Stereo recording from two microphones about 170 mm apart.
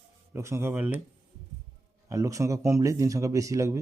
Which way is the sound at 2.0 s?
20° right (ahead or behind).